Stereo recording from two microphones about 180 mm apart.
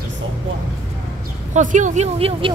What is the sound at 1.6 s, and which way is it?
Speech, 45° right (ahead or behind).